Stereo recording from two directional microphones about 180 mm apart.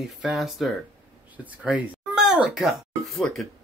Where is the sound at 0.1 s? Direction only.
Centre (ahead or behind).